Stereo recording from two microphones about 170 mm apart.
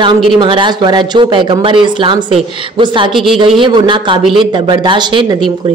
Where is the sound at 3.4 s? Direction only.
30° right (ahead or behind).